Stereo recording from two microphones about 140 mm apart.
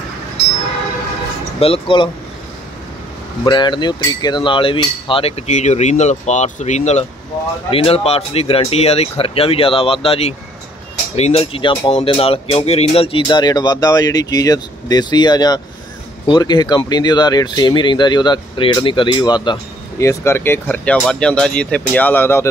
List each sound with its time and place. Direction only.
1.6 s speech: 40° left (ahead or behind)
3.4 s cutlery: 30° left (ahead or behind); by 7.1 s 55° left (ahead or behind)
7.7 s cutlery: 45° left (ahead or behind)
11.1 s speech: 45° left (ahead or behind); by 19.6 s 30° left (ahead or behind)
20.0 s speech: 20° left (ahead or behind)